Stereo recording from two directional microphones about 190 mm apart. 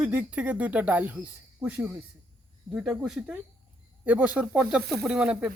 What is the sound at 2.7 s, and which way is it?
Speech, 5° right (ahead or behind).